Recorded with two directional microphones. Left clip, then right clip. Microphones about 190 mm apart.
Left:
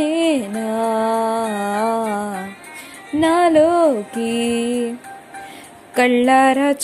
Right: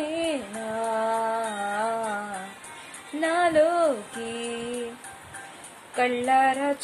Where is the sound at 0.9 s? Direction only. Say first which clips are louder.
Left 6 dB; 40° left (ahead or behind).